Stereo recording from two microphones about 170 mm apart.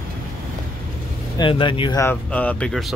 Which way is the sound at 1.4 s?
30° left (ahead or behind).